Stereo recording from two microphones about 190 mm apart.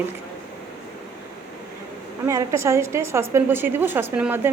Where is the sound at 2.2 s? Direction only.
15° right (ahead or behind).